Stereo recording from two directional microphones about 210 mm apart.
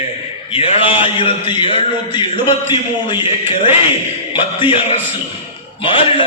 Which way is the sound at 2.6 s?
25° left (ahead or behind).